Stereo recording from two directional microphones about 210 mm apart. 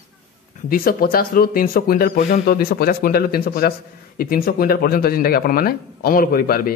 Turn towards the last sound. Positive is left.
turn(degrees=45)  # may be behind; listen again after turning